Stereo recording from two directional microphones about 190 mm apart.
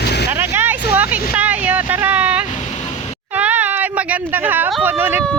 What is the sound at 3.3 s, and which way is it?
Cat, 10° right (ahead or behind).